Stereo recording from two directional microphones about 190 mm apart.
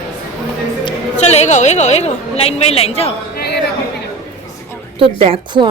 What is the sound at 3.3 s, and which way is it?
Chatter, 60° left (ahead or behind).